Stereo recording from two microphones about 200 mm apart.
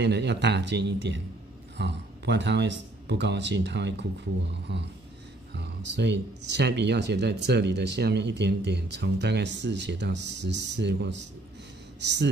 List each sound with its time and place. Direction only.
0.0 s speech: 60° right (ahead or behind)